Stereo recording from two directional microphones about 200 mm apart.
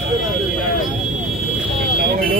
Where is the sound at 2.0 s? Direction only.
45° right (ahead or behind).